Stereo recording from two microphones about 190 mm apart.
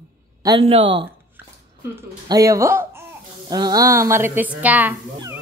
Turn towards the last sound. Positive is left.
turn(degrees=-10)  # may be behind; listen again after turning